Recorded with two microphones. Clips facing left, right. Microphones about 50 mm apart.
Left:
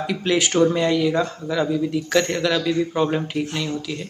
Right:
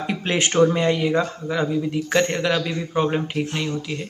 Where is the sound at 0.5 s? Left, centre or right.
Centre.